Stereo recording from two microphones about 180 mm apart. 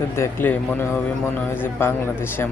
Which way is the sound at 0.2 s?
10° left (ahead or behind).